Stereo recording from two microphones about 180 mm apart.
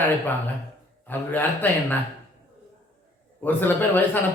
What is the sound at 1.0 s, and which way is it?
Speech, 10° left (ahead or behind).